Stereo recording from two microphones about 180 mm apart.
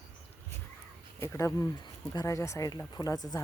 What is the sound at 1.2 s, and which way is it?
Speech, 15° left (ahead or behind).